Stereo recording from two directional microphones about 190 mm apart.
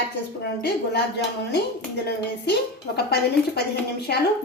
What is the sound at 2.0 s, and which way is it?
Speech, 60° left (ahead or behind).